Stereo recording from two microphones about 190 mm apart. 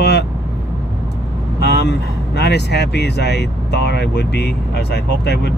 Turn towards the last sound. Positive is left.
turn(degrees=60)  # may be behind; listen again after turning